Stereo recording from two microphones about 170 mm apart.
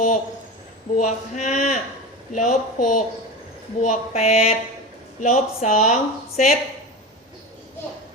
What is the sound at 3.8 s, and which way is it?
Speech, 40° left (ahead or behind).